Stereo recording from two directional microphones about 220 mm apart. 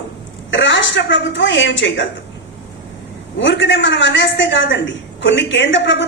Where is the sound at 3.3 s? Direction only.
55° left (ahead or behind).